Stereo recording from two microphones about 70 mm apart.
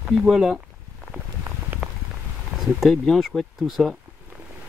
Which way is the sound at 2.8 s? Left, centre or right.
Centre.